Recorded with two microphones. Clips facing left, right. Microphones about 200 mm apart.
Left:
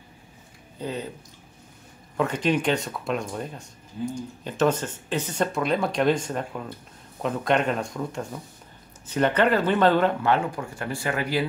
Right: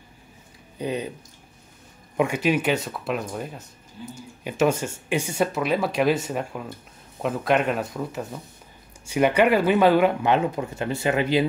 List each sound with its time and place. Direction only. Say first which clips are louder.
0.7 s speech: right 4 dB; 15° right (ahead or behind)
2.1 s speech: right 2 dB; 10° right (ahead or behind)